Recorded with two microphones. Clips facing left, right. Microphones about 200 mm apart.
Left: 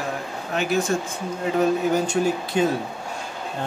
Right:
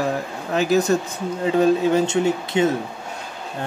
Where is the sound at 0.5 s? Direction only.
40° right (ahead or behind).